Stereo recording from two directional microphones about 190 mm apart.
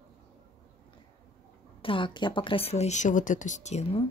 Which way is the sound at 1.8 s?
25° left (ahead or behind).